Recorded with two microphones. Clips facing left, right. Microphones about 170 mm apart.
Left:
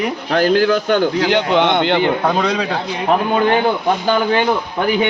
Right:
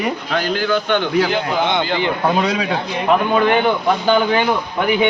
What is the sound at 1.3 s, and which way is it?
Speech, 80° left.